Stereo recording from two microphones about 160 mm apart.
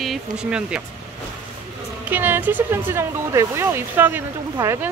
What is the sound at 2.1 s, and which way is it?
Speech, 10° right (ahead or behind).